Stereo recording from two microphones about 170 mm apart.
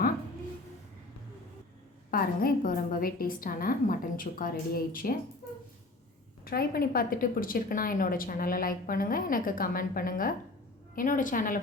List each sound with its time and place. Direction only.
2.0 s a woman's voice: 60° left (ahead or behind)
6.4 s a woman's voice: 60° left (ahead or behind)